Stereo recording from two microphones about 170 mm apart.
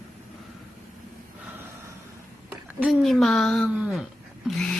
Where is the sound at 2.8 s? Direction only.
Centre (ahead or behind).